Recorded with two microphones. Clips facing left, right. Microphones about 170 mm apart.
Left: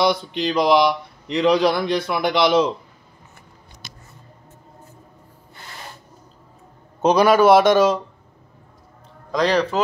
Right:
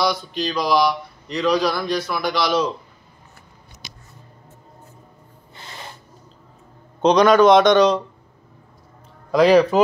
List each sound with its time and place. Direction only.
0.4 s a man's voice: 25° left (ahead or behind)
7.0 s a man's voice: 5° left (ahead or behind)
9.3 s speech: 10° right (ahead or behind)